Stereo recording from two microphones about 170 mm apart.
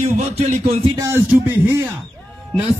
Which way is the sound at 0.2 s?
35° right (ahead or behind).